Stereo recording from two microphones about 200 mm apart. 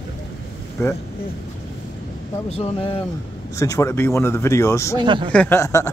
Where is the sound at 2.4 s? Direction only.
30° left (ahead or behind).